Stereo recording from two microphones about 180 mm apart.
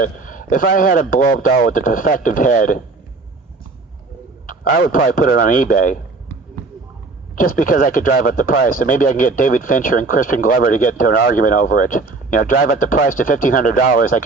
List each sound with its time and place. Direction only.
0.0 s a man's voice: 50° left (ahead or behind)
4.4 s a man's voice: 50° left (ahead or behind)
7.3 s a man's voice: 50° left (ahead or behind)